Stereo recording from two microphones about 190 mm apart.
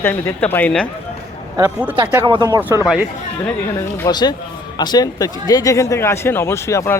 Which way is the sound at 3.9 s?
20° left (ahead or behind).